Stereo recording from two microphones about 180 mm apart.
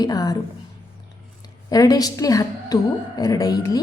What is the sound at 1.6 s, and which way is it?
A woman's voice, 20° left (ahead or behind).